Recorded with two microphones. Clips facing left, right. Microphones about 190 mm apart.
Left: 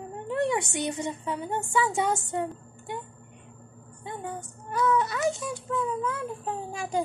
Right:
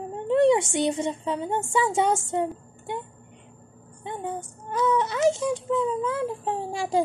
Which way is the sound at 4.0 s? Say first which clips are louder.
Right 4 dB; 25° right (ahead or behind).